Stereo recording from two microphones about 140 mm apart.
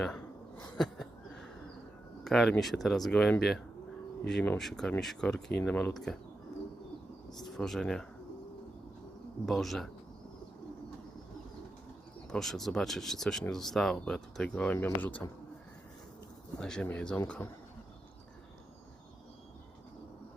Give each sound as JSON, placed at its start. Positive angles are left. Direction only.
{"t": 0.0, "sound": "a sound", "side_deg": 5}
{"t": 2.2, "sound": "speech", "side_deg": 0}
{"t": 7.3, "sound": "speech", "side_deg": 5}
{"t": 9.5, "sound": "speech", "side_deg": 0}
{"t": 12.3, "sound": "speech", "side_deg": 0}
{"t": 16.6, "sound": "speech", "side_deg": 5}